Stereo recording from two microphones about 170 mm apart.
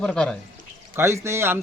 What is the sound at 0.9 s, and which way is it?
Speech, 15° right (ahead or behind).